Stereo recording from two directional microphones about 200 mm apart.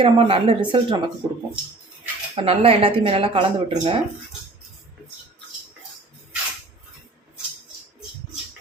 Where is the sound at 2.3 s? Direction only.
30° right (ahead or behind).